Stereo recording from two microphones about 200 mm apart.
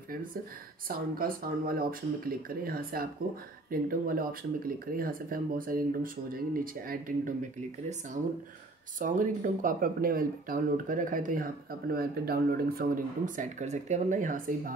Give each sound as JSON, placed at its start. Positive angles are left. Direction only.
{"t": 0.8, "sound": "speech", "side_deg": -45}
{"t": 9.0, "sound": "speech", "side_deg": -40}